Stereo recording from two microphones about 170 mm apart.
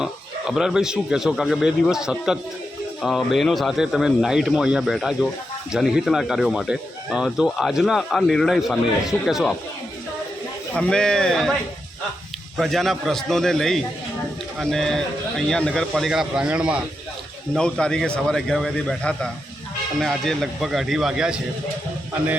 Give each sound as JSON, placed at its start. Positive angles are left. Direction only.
{"t": 0.0, "sound": "speech", "side_deg": -5}
{"t": 10.8, "sound": "speech", "side_deg": 5}
{"t": 12.5, "sound": "speech", "side_deg": 0}
{"t": 17.5, "sound": "speech", "side_deg": 5}